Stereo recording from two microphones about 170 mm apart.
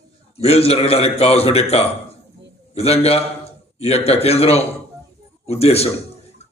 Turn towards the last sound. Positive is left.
turn(degrees=35)  # may be behind; listen again after turning